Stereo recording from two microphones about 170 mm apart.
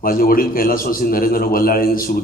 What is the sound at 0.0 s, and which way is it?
A man's voice, 55° left (ahead or behind).